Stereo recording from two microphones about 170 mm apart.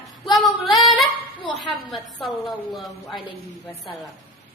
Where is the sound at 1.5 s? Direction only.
Centre (ahead or behind).